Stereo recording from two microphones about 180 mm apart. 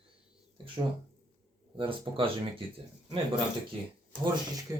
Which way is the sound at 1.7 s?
30° right (ahead or behind).